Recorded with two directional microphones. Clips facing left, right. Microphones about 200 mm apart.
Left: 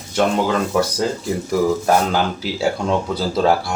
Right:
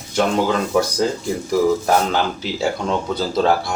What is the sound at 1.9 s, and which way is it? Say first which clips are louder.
Speech: left 1 dB; centre (ahead or behind).